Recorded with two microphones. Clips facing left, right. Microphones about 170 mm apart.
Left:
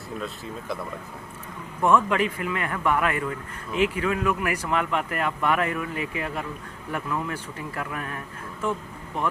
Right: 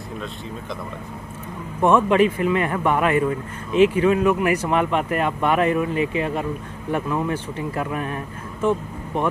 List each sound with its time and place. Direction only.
1.8 s speech: 25° right (ahead or behind)